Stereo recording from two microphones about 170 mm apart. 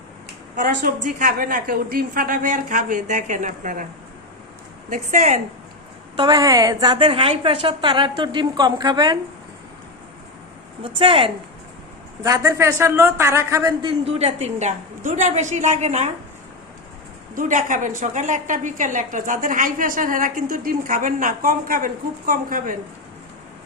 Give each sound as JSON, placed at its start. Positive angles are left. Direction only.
{"t": 0.5, "sound": "a woman's voice", "side_deg": -50}
{"t": 4.9, "sound": "a woman's voice", "side_deg": -45}
{"t": 6.1, "sound": "a woman's voice", "side_deg": -20}
{"t": 10.8, "sound": "a woman's voice", "side_deg": -30}
{"t": 12.2, "sound": "a woman's voice", "side_deg": -20}
{"t": 14.0, "sound": "a woman's voice", "side_deg": -35}
{"t": 17.3, "sound": "a woman's voice", "side_deg": -50}